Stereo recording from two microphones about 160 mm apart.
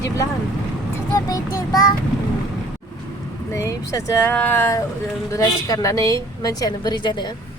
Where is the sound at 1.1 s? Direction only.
20° left (ahead or behind).